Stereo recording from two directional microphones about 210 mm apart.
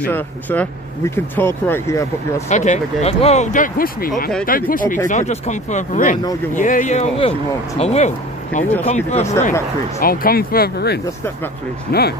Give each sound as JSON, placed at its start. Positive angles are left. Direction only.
{"t": 0.0, "sound": "speech", "side_deg": 5}
{"t": 2.5, "sound": "speech", "side_deg": 35}
{"t": 9.9, "sound": "speech", "side_deg": 45}